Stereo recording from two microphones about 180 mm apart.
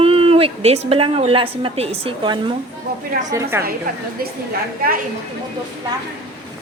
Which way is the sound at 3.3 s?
15° right (ahead or behind).